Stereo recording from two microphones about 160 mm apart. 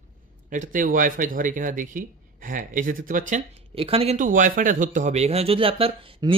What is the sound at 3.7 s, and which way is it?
Speech, 35° right (ahead or behind).